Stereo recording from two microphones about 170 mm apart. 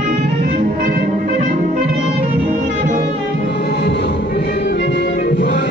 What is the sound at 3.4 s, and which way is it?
Music, 80° left.